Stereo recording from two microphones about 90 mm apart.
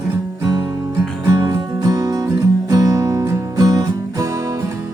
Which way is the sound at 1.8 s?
45° right (ahead or behind).